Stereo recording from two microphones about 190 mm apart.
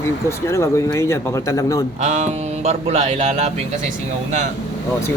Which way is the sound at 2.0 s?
35° right (ahead or behind).